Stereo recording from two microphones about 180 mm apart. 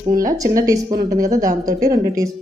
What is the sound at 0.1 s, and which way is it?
Speech, 50° right (ahead or behind).